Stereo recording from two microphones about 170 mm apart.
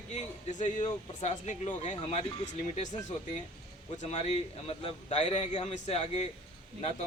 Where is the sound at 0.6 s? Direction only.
45° left (ahead or behind).